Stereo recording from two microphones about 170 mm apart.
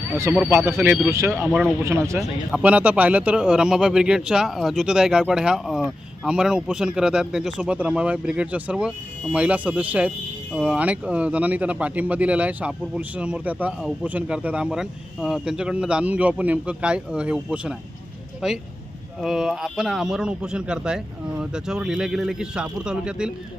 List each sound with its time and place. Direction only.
0.1 s speech: 15° right (ahead or behind)
1.5 s speech: 5° left (ahead or behind)
1.8 s speech: 15° right (ahead or behind)